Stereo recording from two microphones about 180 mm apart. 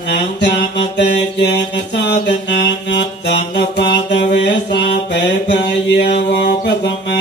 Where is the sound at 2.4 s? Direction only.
70° left (ahead or behind).